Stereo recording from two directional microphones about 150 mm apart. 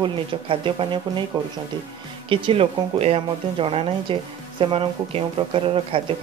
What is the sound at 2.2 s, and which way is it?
Speech, 35° right (ahead or behind).